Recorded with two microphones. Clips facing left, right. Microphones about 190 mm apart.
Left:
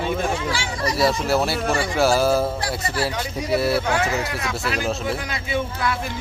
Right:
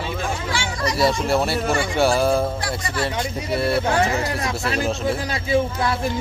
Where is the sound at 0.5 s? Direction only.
30° left (ahead or behind).